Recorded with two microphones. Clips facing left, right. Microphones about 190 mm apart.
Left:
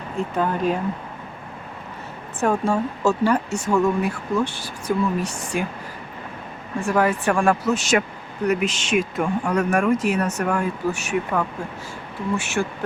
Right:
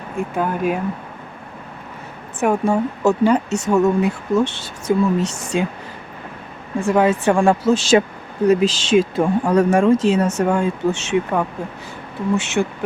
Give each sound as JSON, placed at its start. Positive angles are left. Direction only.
{"t": 0.2, "sound": "speech", "side_deg": -10}
{"t": 2.4, "sound": "speech", "side_deg": -20}
{"t": 5.3, "sound": "speech", "side_deg": -75}
{"t": 6.8, "sound": "speech", "side_deg": -20}